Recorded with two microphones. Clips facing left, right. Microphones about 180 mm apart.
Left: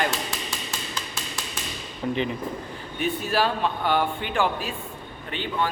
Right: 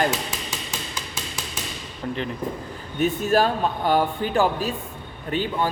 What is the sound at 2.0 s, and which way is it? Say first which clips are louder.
Speech: left 2 dB; 5° left (ahead or behind).